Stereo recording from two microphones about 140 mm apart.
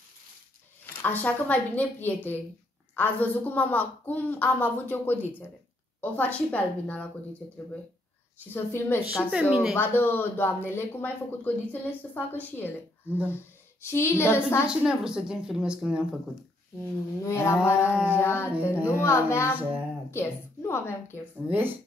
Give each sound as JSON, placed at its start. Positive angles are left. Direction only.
{"t": 1.0, "sound": "speech", "side_deg": 10}
{"t": 8.7, "sound": "speech", "side_deg": 15}
{"t": 9.1, "sound": "a woman's voice", "side_deg": -5}
{"t": 9.8, "sound": "speech", "side_deg": 15}
{"t": 13.8, "sound": "speech", "side_deg": 20}
{"t": 14.7, "sound": "a woman's voice", "side_deg": -5}
{"t": 17.2, "sound": "speech", "side_deg": 20}
{"t": 17.9, "sound": "speech", "side_deg": -10}
{"t": 18.2, "sound": "a woman's voice", "side_deg": 15}
{"t": 21.5, "sound": "speech", "side_deg": -15}